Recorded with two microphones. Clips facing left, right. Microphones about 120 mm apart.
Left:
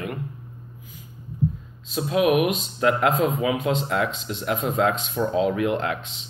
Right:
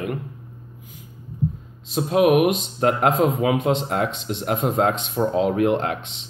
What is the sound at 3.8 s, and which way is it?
Speech, 40° right (ahead or behind).